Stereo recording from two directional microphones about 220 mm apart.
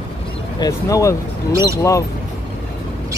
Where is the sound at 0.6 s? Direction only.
15° left (ahead or behind).